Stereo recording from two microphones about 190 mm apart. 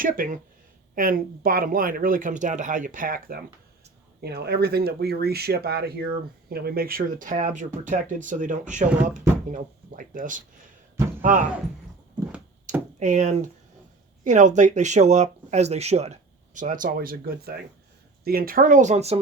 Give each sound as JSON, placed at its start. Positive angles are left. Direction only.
{"t": 0.0, "sound": "speech", "side_deg": -45}
{"t": 13.0, "sound": "speech", "side_deg": -40}